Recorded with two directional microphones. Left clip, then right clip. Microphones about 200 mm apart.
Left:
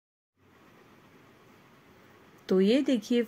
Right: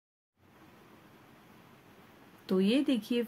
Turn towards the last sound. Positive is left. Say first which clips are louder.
# left 4 dB
turn(degrees=15)  # may be behind; listen again after turning